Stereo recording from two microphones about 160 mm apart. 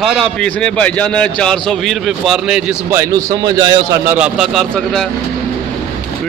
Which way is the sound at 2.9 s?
20° right (ahead or behind).